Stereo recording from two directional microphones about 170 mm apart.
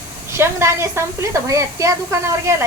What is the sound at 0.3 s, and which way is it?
A woman's voice, 15° right (ahead or behind).